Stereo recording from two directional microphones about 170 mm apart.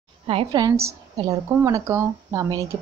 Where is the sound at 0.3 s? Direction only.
30° right (ahead or behind).